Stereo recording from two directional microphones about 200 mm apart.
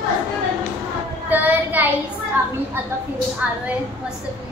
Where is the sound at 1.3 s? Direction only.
10° right (ahead or behind).